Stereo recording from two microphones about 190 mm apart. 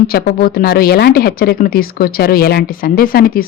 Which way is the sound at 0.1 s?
55° left (ahead or behind).